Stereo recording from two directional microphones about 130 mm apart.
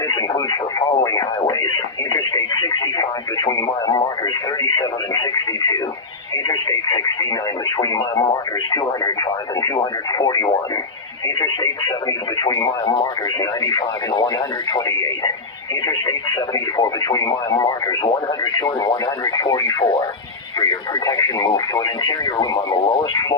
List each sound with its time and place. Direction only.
0.1 s speech: 30° left (ahead or behind)
16.7 s speech: 30° left (ahead or behind)
19.8 s speech: 40° left (ahead or behind)